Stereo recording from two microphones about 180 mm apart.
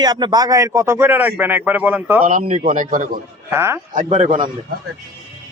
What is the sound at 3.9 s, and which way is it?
Speech, 45° right (ahead or behind).